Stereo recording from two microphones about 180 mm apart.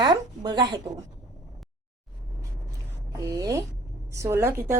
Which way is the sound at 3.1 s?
20° right (ahead or behind).